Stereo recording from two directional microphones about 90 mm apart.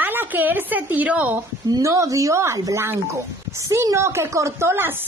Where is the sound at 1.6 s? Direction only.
40° right (ahead or behind).